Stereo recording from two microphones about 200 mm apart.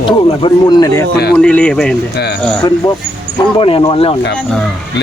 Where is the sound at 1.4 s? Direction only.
5° left (ahead or behind).